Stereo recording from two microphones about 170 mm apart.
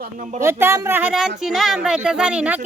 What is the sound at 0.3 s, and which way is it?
A woman's voice, 15° right (ahead or behind).